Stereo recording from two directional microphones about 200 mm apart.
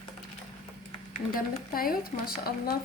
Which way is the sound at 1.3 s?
45° left (ahead or behind).